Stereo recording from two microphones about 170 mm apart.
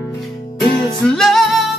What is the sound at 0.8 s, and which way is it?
Music, 5° left (ahead or behind).